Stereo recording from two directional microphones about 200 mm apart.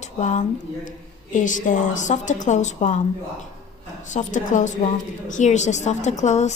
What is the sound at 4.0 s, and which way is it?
Speech, 40° left (ahead or behind).